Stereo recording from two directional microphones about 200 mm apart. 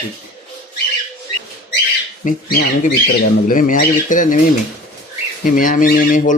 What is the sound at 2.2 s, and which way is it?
Speech, 40° left (ahead or behind).